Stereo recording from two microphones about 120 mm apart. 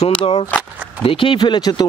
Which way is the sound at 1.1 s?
45° left (ahead or behind).